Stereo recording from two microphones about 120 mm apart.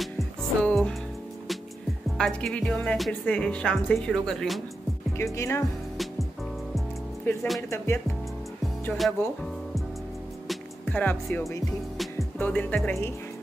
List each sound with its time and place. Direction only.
0.0 s music: centre (ahead or behind)
2.1 s music: 5° left (ahead or behind)
3.1 s speech: 10° left (ahead or behind)
5.1 s speech: 25° left (ahead or behind)
7.3 s speech: 15° left (ahead or behind)
9.0 s music: centre (ahead or behind)
10.9 s speech: 10° left (ahead or behind)